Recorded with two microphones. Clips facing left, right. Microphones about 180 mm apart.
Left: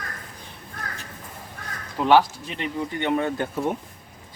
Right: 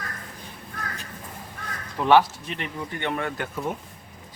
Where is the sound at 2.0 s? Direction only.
15° left (ahead or behind).